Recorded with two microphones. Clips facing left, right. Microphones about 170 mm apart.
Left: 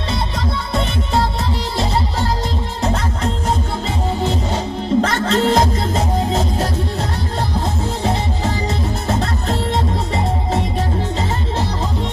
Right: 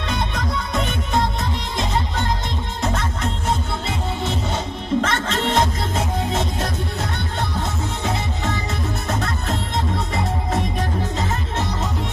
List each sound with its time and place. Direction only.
0.1 s music: 30° left (ahead or behind)
2.8 s music: 35° left (ahead or behind)
5.0 s music: 35° left (ahead or behind)
11.1 s music: 30° left (ahead or behind)